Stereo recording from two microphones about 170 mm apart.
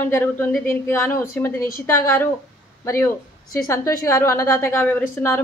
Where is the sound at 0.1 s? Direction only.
10° left (ahead or behind).